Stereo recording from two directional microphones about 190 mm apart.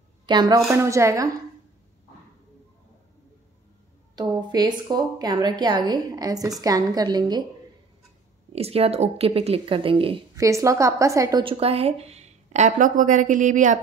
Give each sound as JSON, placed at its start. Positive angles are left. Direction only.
{"t": 0.3, "sound": "a woman's voice", "side_deg": -20}
{"t": 4.1, "sound": "a woman's voice", "side_deg": -20}
{"t": 8.5, "sound": "a woman's voice", "side_deg": -30}
{"t": 10.3, "sound": "a woman's voice", "side_deg": -15}
{"t": 11.4, "sound": "a woman's voice", "side_deg": -30}